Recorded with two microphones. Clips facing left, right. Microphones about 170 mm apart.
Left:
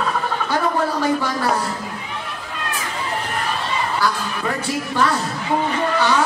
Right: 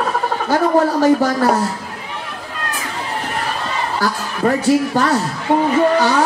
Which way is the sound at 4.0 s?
45° right (ahead or behind).